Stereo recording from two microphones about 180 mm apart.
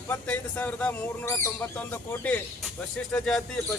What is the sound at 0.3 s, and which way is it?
Speech, 10° left (ahead or behind).